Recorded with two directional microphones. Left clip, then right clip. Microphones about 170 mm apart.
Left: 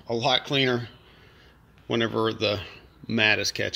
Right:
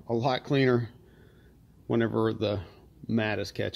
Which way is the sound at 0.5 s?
30° right (ahead or behind).